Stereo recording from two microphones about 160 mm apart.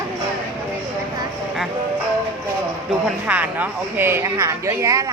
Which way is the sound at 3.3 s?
10° right (ahead or behind).